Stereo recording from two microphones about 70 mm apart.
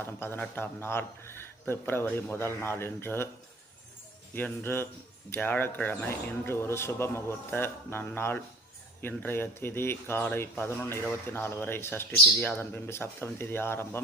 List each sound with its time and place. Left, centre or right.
0.0 s speech: left
4.4 s speech: left